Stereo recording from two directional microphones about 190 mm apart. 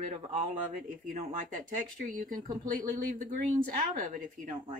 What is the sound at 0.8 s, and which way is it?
Speech, 45° right (ahead or behind).